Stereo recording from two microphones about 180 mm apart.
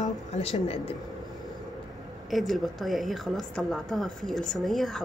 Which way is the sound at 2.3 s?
Centre (ahead or behind).